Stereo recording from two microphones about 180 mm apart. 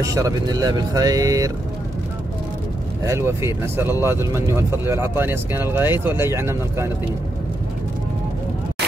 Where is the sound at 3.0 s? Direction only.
15° right (ahead or behind).